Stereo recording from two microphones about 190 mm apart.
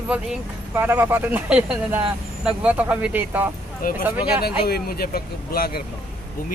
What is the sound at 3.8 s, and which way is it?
Speech, 50° left (ahead or behind).